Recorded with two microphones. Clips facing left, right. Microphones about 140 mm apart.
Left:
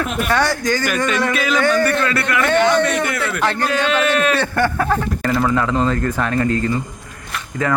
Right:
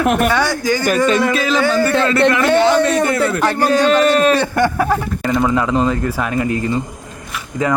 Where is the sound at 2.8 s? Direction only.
30° right (ahead or behind).